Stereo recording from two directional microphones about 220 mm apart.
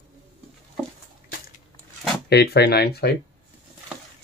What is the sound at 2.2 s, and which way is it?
Speech, 45° left (ahead or behind).